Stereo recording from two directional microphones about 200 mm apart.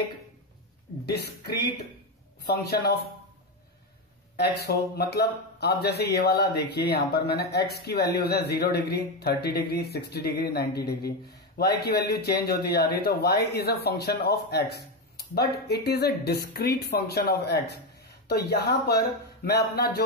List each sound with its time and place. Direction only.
1.0 s speech: 55° left (ahead or behind)
4.4 s speech: 55° left (ahead or behind)